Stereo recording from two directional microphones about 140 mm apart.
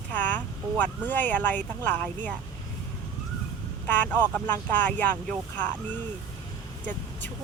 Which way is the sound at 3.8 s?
10° left (ahead or behind).